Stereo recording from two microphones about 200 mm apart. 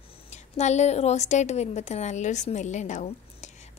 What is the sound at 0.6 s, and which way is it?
A woman's voice, 35° left (ahead or behind).